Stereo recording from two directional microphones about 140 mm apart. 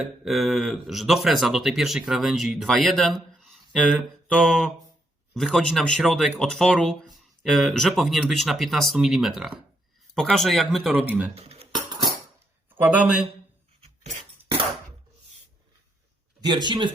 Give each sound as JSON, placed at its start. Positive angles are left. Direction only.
{"t": 0.0, "sound": "speech", "side_deg": 0}
{"t": 10.9, "sound": "speech", "side_deg": -10}
{"t": 11.3, "sound": "cutlery", "side_deg": -45}
{"t": 12.7, "sound": "speech", "side_deg": -10}
{"t": 16.4, "sound": "a man's voice", "side_deg": -30}